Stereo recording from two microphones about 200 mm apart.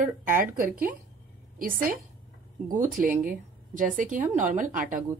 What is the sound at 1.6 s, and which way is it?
A woman's voice, 45° right (ahead or behind).